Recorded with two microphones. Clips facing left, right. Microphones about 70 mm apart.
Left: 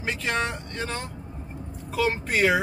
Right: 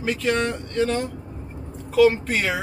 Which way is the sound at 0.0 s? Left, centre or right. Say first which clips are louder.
Right 5 dB; centre.